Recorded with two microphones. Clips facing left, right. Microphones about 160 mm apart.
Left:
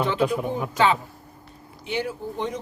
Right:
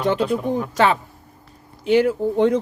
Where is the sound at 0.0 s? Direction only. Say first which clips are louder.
Right 3 dB; 40° right (ahead or behind).